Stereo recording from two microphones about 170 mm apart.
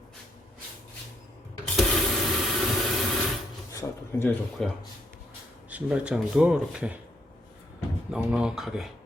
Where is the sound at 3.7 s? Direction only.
20° left (ahead or behind).